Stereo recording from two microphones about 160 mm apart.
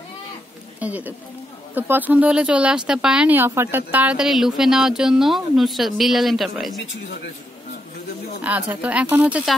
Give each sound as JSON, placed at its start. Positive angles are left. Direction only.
{"t": 0.7, "sound": "speech", "side_deg": -10}
{"t": 8.4, "sound": "speech", "side_deg": -10}